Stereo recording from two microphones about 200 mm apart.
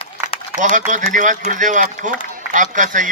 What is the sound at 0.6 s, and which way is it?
Speech, 40° right (ahead or behind).